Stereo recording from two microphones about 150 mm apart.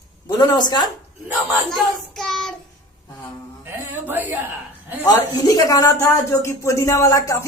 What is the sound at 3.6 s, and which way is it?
A man's voice, 15° right (ahead or behind).